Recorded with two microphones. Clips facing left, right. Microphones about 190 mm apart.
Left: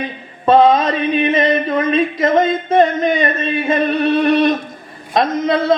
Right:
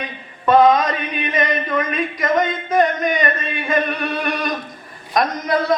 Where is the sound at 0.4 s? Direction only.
30° left (ahead or behind).